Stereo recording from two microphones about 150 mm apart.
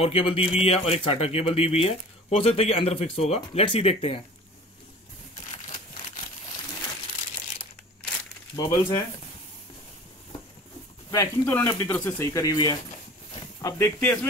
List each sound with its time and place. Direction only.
0.0 s speech: 40° left (ahead or behind)
5.5 s a sound: 50° left (ahead or behind)
8.5 s speech: 30° left (ahead or behind)
11.1 s speech: 20° left (ahead or behind)